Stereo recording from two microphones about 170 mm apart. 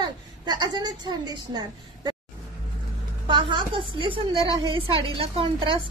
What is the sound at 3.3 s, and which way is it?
Speech, 30° right (ahead or behind).